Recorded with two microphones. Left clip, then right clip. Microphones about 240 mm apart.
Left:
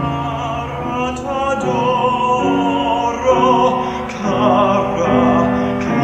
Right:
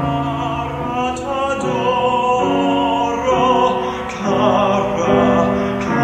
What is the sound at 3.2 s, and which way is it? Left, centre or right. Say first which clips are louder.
Music: left 2 dB; left.